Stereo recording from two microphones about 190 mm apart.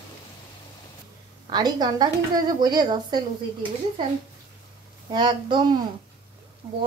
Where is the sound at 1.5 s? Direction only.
20° right (ahead or behind).